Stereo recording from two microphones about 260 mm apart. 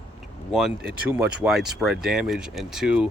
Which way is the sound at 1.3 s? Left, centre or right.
Centre.